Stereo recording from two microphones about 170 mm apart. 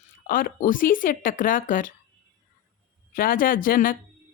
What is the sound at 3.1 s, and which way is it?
Speech, 55° left (ahead or behind).